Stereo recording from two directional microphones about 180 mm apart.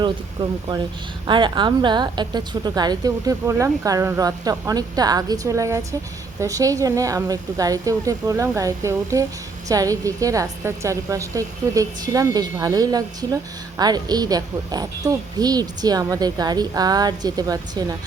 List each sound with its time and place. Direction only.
0.4 s a woman's voice: 35° right (ahead or behind)